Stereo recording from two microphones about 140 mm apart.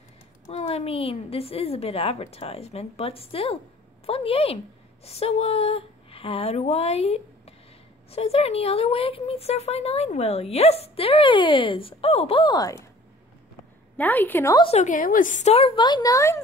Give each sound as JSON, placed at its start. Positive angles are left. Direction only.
{"t": 0.5, "sound": "speech", "side_deg": 50}
{"t": 13.9, "sound": "a woman's voice", "side_deg": 10}
{"t": 14.8, "sound": "speech", "side_deg": 70}